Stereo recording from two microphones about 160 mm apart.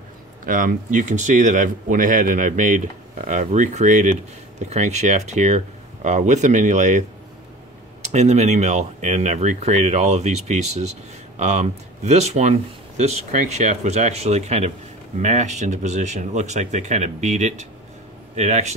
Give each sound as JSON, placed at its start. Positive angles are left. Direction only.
{"t": 0.5, "sound": "speech", "side_deg": -55}
{"t": 8.1, "sound": "speech", "side_deg": -45}